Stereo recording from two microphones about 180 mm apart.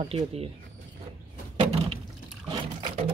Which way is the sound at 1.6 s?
35° right (ahead or behind).